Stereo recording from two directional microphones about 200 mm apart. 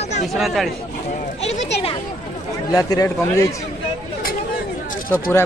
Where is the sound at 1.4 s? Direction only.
30° left (ahead or behind).